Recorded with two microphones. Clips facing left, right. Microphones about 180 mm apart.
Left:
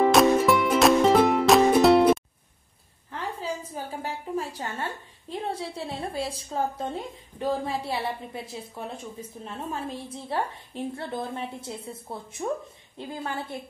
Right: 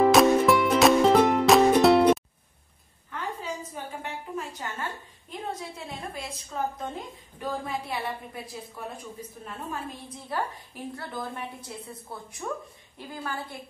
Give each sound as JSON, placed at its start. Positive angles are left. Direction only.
{"t": 0.0, "sound": "music", "side_deg": 0}
{"t": 3.7, "sound": "a sound", "side_deg": 35}
{"t": 5.3, "sound": "a woman's voice", "side_deg": 30}